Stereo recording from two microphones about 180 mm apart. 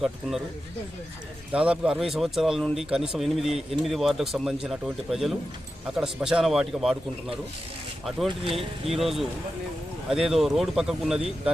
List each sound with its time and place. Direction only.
0.0 s speech: centre (ahead or behind)
1.5 s speech: 5° right (ahead or behind)
8.4 s speech: 30° right (ahead or behind)
9.0 s speech: centre (ahead or behind)